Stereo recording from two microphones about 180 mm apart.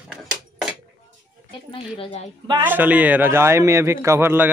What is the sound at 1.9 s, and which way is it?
Speech, 35° left (ahead or behind).